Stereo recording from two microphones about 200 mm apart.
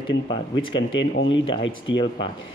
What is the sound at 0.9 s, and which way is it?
Speech, 65° left (ahead or behind).